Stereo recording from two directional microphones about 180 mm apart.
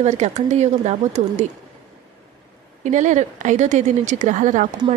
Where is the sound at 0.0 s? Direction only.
40° right (ahead or behind).